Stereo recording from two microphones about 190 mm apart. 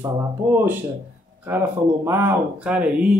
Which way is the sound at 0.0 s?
15° right (ahead or behind).